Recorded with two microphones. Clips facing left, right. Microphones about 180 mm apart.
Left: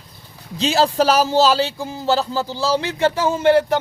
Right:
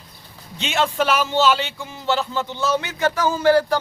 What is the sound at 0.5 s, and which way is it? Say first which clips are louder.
Speech: left 5 dB; 35° left (ahead or behind).